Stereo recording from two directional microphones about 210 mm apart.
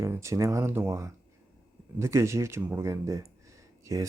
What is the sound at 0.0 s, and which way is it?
Speech, 15° right (ahead or behind).